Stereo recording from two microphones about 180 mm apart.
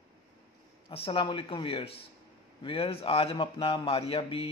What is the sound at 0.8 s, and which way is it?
A man's voice, 30° left (ahead or behind).